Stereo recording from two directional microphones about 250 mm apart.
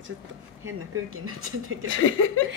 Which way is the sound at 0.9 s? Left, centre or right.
Right.